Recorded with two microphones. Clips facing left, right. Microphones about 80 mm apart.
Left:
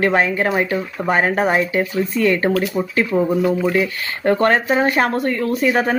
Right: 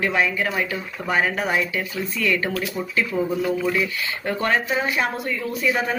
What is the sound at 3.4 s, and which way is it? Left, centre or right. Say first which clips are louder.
Speech: left 5 dB; left.